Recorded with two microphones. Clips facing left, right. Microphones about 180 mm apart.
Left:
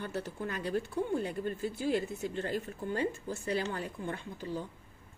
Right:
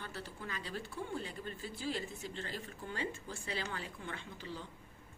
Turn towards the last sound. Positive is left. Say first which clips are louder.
# left 7 dB
turn(degrees=45)  # may be behind; listen again after turning